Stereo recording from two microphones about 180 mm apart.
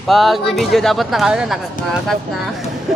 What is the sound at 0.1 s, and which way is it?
Speech, centre (ahead or behind).